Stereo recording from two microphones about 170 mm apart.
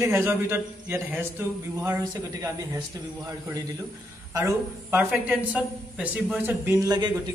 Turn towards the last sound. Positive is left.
turn(degrees=-25)  # may be behind; listen again after turning